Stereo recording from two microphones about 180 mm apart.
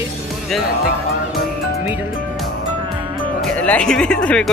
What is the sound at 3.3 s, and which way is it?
Speech, 5° left (ahead or behind).